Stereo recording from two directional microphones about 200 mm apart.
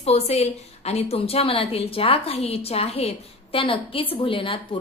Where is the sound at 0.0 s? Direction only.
30° left (ahead or behind).